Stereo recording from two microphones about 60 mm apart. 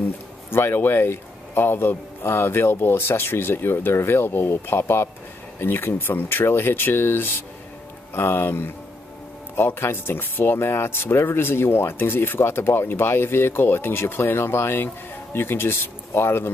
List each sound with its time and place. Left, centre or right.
0.5 s speech: left